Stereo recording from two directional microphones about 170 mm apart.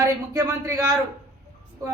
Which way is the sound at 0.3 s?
20° right (ahead or behind).